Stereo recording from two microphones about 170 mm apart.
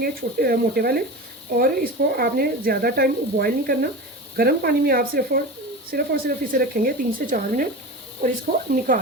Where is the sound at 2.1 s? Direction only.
65° right (ahead or behind).